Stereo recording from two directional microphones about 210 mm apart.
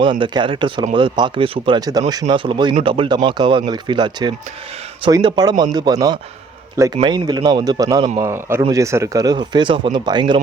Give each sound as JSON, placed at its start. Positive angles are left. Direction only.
{"t": 0.0, "sound": "speech", "side_deg": -20}